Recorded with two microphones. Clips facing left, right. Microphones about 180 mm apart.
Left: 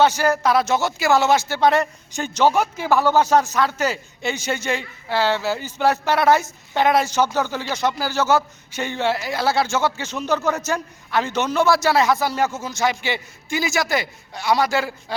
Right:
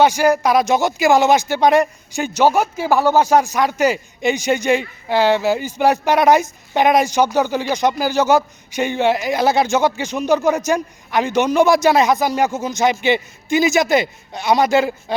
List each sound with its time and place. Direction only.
0.0 s speech: 15° right (ahead or behind)